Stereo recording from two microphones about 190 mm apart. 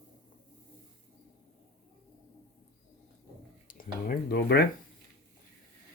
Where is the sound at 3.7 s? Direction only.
45° left (ahead or behind).